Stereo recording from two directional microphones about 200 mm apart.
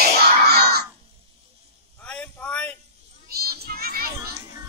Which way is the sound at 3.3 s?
50° right (ahead or behind).